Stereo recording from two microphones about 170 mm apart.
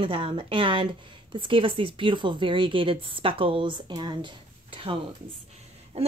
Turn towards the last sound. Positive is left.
turn(degrees=-40)  # may be behind; listen again after turning